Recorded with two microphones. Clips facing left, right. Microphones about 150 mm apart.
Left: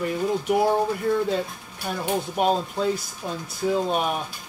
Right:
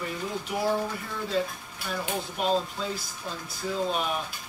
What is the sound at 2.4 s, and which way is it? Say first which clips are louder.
Speech: left 6 dB; 55° left (ahead or behind).